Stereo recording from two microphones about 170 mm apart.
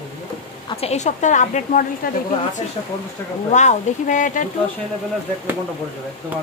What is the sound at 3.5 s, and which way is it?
Speech, 45° left (ahead or behind).